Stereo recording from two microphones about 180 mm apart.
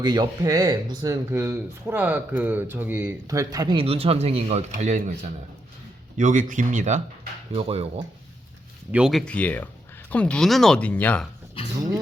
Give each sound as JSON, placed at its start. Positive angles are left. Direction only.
{"t": 0.0, "sound": "speech", "side_deg": -25}
{"t": 8.9, "sound": "speech", "side_deg": -5}
{"t": 11.6, "sound": "speech", "side_deg": 30}